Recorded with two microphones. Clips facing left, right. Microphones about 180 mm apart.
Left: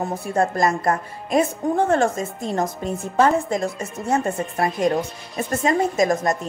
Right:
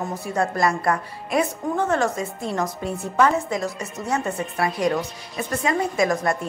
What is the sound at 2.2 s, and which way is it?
A woman's voice, 45° left (ahead or behind).